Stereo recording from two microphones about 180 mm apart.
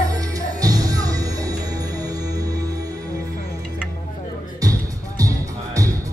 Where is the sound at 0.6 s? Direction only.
20° right (ahead or behind).